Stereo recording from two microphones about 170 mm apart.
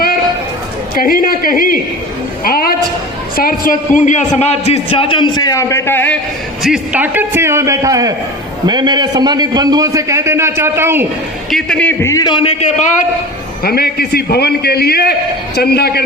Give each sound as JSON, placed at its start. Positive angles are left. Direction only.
{"t": 0.9, "sound": "a man's voice", "side_deg": 55}
{"t": 2.4, "sound": "a sound", "side_deg": 60}
{"t": 3.3, "sound": "a man's voice", "side_deg": 60}
{"t": 6.6, "sound": "a man's voice", "side_deg": -5}
{"t": 11.5, "sound": "a man's voice", "side_deg": 5}
{"t": 13.7, "sound": "a man's voice", "side_deg": 65}